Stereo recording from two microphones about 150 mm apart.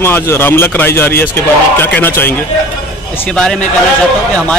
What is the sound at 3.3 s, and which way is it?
Speech, 5° left (ahead or behind).